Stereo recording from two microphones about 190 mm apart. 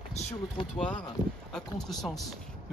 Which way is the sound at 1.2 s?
20° left (ahead or behind).